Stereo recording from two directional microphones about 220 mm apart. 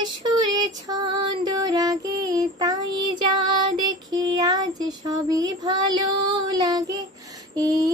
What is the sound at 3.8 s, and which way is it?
Child singing, 20° right (ahead or behind).